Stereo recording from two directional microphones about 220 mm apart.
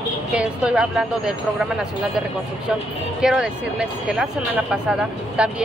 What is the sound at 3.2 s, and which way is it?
Speech, 5° right (ahead or behind).